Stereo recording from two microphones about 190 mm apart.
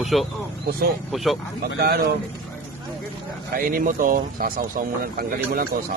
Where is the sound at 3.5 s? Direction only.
50° right (ahead or behind).